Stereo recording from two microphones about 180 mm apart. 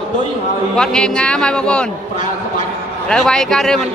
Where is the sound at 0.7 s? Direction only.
5° left (ahead or behind).